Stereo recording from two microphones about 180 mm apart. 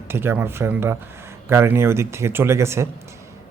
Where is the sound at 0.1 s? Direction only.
15° right (ahead or behind).